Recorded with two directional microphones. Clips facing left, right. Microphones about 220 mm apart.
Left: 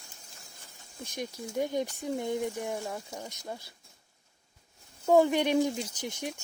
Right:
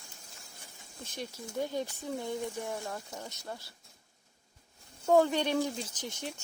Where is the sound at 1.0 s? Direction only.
15° left (ahead or behind).